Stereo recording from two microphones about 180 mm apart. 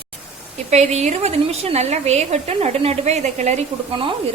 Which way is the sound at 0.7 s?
35° right (ahead or behind).